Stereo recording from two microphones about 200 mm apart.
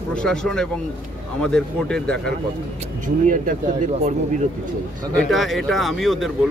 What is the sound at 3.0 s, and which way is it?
Speech, 40° right (ahead or behind).